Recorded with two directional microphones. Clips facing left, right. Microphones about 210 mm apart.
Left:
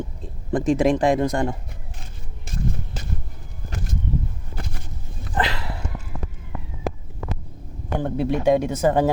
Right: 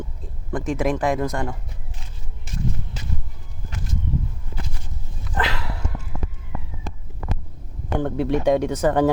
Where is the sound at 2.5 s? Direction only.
45° left (ahead or behind).